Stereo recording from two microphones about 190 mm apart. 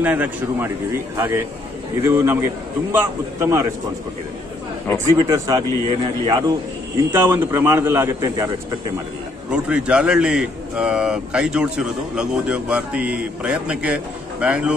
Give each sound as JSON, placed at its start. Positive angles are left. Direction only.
{"t": 0.0, "sound": "a man's voice", "side_deg": -10}
{"t": 5.3, "sound": "speech", "side_deg": -20}
{"t": 7.1, "sound": "a man's voice", "side_deg": -10}
{"t": 9.5, "sound": "a man's voice", "side_deg": -5}